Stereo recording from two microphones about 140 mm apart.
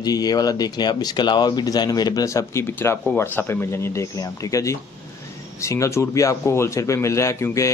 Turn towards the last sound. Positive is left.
turn(degrees=20)  # may be behind; listen again after turning